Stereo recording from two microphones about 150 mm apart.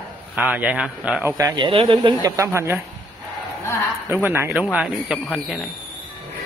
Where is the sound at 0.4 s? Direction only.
10° right (ahead or behind).